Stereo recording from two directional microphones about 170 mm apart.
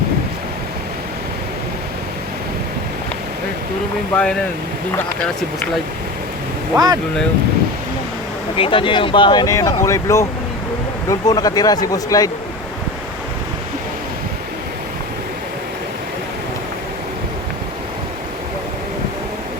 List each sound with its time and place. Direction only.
4.1 s speech: 5° left (ahead or behind)
6.7 s speech: 20° right (ahead or behind)
8.5 s speech: 30° left (ahead or behind)